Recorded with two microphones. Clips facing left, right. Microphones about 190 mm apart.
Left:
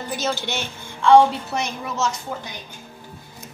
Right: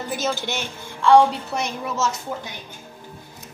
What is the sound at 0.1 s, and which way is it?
A woman's voice, 5° right (ahead or behind).